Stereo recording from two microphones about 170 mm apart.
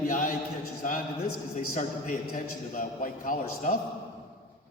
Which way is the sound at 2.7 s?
50° left (ahead or behind).